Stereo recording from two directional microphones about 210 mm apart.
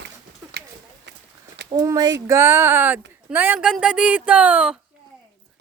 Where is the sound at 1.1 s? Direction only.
60° right (ahead or behind).